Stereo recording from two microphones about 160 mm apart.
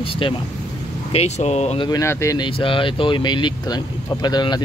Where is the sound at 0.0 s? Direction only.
35° left (ahead or behind).